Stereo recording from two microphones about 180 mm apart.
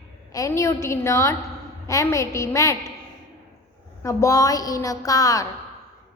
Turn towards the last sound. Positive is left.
turn(degrees=20)  # may be behind; listen again after turning